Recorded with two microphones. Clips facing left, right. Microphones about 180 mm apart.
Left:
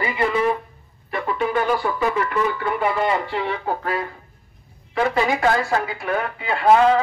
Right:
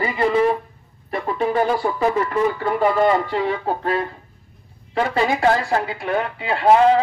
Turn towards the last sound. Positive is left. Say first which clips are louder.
# right 1 dB
turn(degrees=-30)  # may be behind; listen again after turning